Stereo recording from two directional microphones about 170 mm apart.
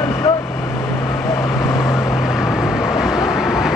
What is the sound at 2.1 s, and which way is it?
Vehicle, centre (ahead or behind).